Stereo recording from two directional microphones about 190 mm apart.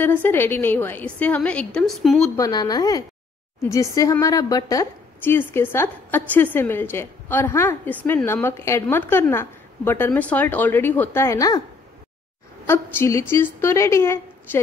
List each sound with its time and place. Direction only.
0.0 s a woman's voice: 10° left (ahead or behind)
2.3 s a woman's voice: 20° left (ahead or behind)
12.6 s a woman's voice: 15° left (ahead or behind)